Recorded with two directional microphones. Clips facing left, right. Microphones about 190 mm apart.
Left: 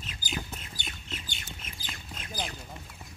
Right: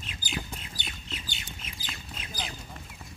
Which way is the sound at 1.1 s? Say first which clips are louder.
Right 1 dB; 50° left (ahead or behind).